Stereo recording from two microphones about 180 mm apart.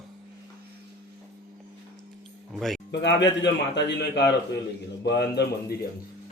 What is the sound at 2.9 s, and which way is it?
A man's voice, 75° left (ahead or behind).